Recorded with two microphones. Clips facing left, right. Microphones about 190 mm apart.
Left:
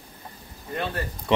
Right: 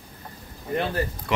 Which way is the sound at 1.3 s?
25° left (ahead or behind).